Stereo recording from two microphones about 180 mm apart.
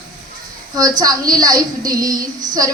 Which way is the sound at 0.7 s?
20° right (ahead or behind).